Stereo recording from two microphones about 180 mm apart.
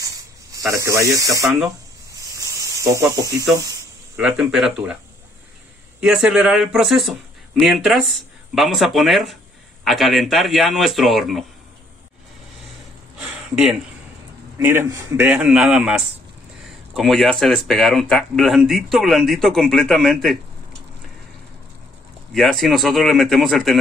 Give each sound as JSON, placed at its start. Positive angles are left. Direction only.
{"t": 0.0, "sound": "snake", "side_deg": -20}
{"t": 4.2, "sound": "speech", "side_deg": -5}
{"t": 5.9, "sound": "speech", "side_deg": -5}
{"t": 14.6, "sound": "a man's voice", "side_deg": -10}
{"t": 22.3, "sound": "speech", "side_deg": 0}